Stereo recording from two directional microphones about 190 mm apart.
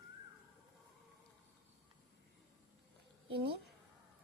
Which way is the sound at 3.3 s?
60° right (ahead or behind).